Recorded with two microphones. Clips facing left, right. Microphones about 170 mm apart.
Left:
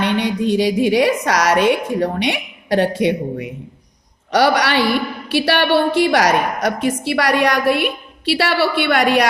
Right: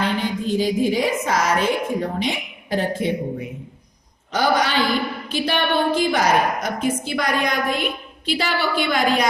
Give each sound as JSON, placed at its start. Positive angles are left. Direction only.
{"t": 0.0, "sound": "a woman's voice", "side_deg": 75}